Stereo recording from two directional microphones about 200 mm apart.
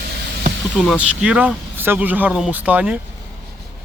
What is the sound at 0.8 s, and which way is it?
Speech, 5° right (ahead or behind).